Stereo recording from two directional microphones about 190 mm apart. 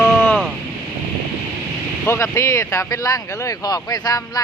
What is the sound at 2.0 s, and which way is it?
Speech, 15° left (ahead or behind).